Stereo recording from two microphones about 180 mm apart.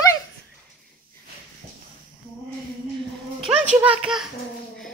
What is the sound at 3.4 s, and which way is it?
Speech, 40° right (ahead or behind).